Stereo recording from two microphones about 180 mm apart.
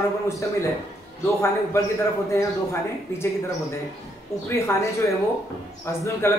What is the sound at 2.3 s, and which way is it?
Speech, 15° left (ahead or behind).